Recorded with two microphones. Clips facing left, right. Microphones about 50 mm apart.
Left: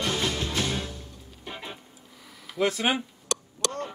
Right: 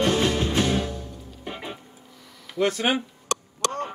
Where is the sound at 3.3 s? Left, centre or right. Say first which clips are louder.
Right 4 dB; right.